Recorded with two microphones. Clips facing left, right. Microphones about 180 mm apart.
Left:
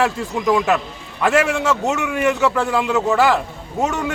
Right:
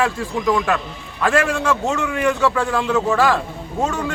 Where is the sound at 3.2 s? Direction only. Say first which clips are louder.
Left 1 dB; 20° left (ahead or behind).